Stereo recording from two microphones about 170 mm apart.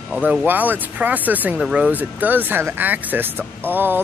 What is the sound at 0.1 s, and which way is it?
Speech, 5° right (ahead or behind).